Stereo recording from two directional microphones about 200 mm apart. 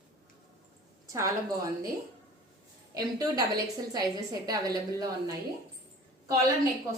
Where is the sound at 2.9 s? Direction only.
20° right (ahead or behind).